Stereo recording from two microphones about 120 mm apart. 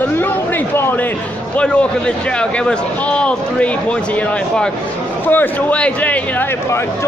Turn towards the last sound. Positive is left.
turn(degrees=20)  # may be behind; listen again after turning